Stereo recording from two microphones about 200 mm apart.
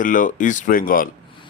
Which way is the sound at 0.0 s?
40° left (ahead or behind).